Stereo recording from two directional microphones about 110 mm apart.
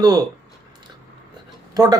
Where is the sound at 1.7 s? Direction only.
35° right (ahead or behind).